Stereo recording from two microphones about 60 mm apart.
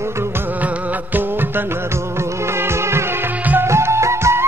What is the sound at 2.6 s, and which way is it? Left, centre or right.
Music, right.